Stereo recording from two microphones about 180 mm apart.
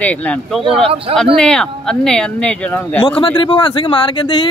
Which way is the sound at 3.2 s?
25° left (ahead or behind).